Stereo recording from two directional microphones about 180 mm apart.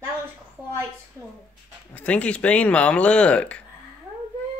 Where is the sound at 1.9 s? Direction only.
10° left (ahead or behind).